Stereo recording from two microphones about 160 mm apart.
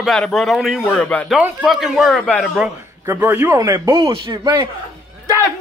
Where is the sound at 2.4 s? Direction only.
5° right (ahead or behind); by 4.0 s 20° right (ahead or behind).